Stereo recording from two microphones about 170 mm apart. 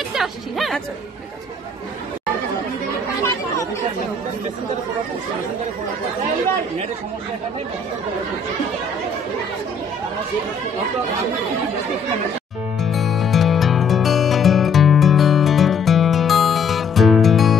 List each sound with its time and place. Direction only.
0.1 s music: centre (ahead or behind)
12.8 s music: centre (ahead or behind)